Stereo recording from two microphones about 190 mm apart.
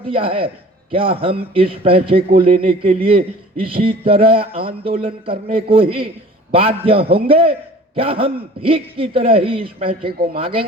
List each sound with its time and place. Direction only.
0.1 s a man's voice: 30° right (ahead or behind)